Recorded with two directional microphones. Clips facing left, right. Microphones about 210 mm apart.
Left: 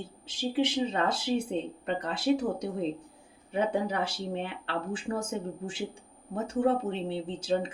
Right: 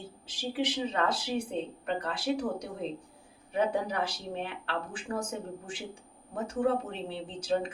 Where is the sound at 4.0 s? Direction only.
25° left (ahead or behind).